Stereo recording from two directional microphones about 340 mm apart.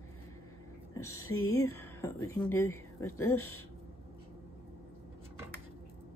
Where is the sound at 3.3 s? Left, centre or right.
Left.